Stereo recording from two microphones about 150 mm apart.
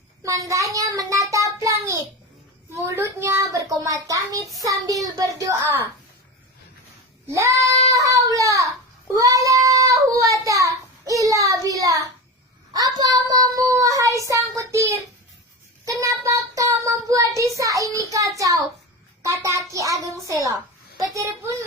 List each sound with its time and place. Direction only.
0.2 s child singing: 20° right (ahead or behind)
4.6 s a child's voice: 25° right (ahead or behind)
7.3 s child singing: 20° right (ahead or behind)
8.4 s a sound: 20° right (ahead or behind)
9.1 s child singing: 20° right (ahead or behind)
19.2 s a child's voice: 20° right (ahead or behind)